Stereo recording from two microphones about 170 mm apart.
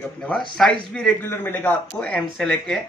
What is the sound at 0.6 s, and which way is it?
A man's voice, 5° left (ahead or behind).